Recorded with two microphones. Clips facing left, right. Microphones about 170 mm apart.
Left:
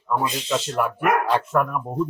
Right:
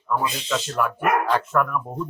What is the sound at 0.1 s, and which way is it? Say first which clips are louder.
Speech: left 1 dB; 15° left (ahead or behind).